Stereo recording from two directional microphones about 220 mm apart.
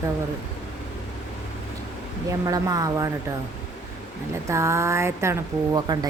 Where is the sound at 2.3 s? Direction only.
15° right (ahead or behind).